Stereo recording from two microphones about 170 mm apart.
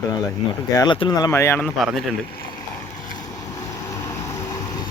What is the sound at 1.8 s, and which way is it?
Speech, centre (ahead or behind).